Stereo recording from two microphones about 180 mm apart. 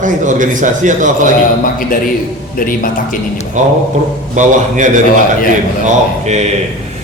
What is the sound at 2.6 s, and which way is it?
Speech, 50° left (ahead or behind).